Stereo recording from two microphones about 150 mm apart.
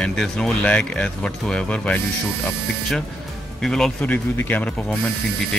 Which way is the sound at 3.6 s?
5° left (ahead or behind).